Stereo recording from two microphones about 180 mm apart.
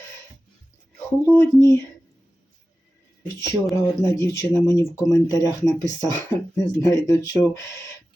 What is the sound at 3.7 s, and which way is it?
Speech, 15° left (ahead or behind).